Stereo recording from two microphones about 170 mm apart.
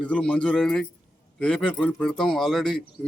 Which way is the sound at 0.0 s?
5° left (ahead or behind).